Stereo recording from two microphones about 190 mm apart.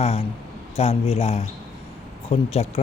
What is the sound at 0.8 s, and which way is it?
Speech, 30° left (ahead or behind).